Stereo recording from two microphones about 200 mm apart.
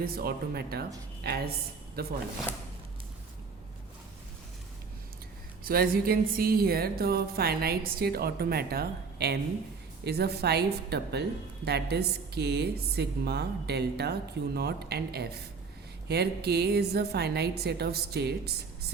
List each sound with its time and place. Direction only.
0.0 s a woman's voice: 50° right (ahead or behind)
5.6 s a woman's voice: 45° right (ahead or behind)